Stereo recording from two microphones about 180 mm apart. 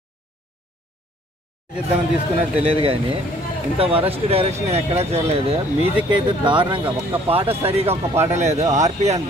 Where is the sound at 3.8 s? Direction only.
35° right (ahead or behind).